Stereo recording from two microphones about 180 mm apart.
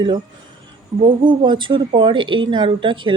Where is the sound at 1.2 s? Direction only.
25° right (ahead or behind).